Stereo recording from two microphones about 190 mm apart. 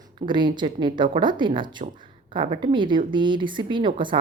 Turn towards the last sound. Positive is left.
turn(degrees=-25)  # may be behind; listen again after turning